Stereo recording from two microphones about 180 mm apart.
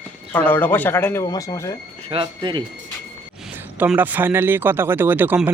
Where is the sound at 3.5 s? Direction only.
10° right (ahead or behind).